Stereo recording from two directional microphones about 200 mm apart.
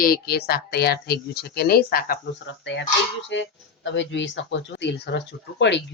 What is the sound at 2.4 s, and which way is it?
Speech, 65° left (ahead or behind).